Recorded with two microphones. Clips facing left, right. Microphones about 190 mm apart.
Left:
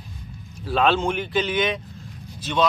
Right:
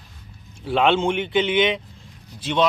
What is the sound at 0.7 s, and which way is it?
Speech, 25° right (ahead or behind).